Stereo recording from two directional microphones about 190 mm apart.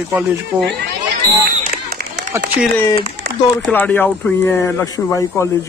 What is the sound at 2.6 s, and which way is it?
Speech, 5° right (ahead or behind).